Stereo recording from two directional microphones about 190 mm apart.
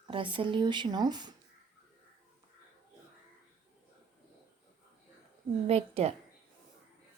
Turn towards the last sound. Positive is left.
turn(degrees=-35)  # may be behind; listen again after turning